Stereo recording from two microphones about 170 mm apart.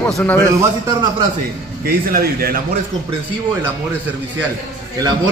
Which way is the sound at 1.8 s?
60° right (ahead or behind).